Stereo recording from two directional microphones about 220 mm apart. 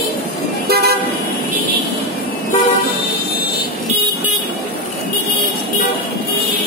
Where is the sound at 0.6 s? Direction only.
45° right (ahead or behind).